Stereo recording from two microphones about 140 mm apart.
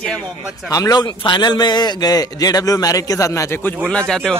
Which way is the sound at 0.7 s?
25° left (ahead or behind).